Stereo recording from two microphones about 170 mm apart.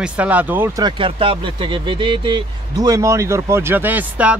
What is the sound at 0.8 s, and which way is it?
Speech, 30° right (ahead or behind).